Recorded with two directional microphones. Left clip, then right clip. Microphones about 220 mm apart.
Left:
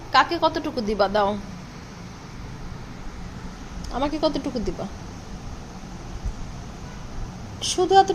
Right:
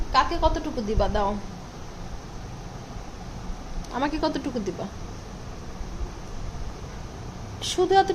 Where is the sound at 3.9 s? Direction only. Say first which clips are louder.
Left 2 dB; 10° left (ahead or behind).